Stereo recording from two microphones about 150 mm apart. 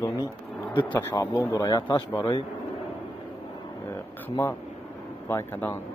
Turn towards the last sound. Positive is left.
turn(degrees=15)  # may be behind; listen again after turning